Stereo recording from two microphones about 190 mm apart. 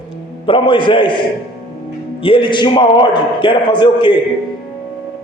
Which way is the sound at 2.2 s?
25° left (ahead or behind).